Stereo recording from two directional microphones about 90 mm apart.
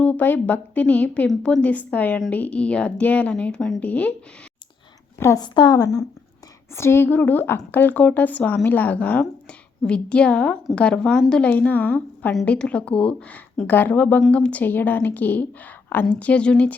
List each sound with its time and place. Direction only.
0.0 s a woman's voice: 20° left (ahead or behind)
5.4 s a woman's voice: 60° left (ahead or behind)
5.7 s speech: 40° left (ahead or behind)
6.7 s a woman's voice: 30° left (ahead or behind); by 16.7 s 10° left (ahead or behind)